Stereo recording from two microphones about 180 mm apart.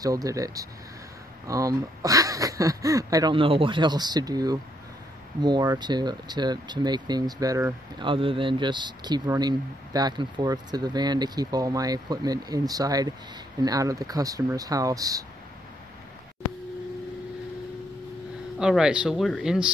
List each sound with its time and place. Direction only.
0.0 s speech: 20° right (ahead or behind)
8.0 s speech: 30° right (ahead or behind)
18.6 s speech: 5° right (ahead or behind)